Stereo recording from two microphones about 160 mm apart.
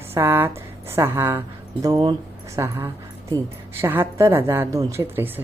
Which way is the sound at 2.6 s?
15° right (ahead or behind).